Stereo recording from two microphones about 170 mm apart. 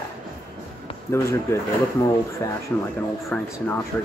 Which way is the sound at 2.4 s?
15° left (ahead or behind).